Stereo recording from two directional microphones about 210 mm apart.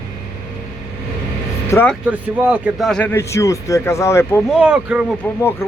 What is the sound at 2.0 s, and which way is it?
A man's voice, 5° right (ahead or behind).